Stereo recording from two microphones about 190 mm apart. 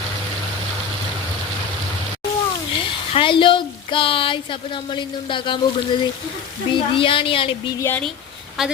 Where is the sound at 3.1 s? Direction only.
25° left (ahead or behind).